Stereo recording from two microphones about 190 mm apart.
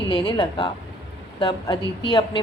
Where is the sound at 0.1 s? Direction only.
25° left (ahead or behind).